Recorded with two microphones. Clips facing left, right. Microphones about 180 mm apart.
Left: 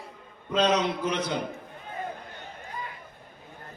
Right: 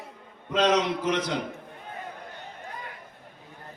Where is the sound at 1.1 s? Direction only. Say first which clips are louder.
Right 1 dB; 90° right.